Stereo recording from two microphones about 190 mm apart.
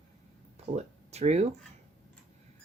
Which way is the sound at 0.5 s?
35° right (ahead or behind).